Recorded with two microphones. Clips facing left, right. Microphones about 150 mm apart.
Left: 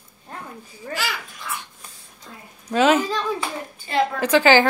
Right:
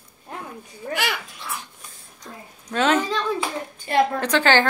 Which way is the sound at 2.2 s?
65° right (ahead or behind).